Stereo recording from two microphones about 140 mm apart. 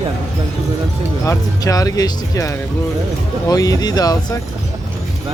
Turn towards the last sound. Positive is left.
turn(degrees=30)  # may be behind; listen again after turning